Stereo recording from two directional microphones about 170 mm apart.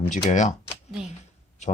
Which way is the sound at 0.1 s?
45° left (ahead or behind).